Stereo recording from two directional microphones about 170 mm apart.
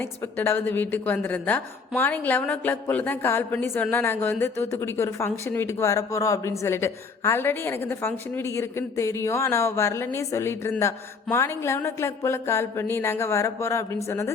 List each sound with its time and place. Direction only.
0.0 s a woman's voice: 10° left (ahead or behind)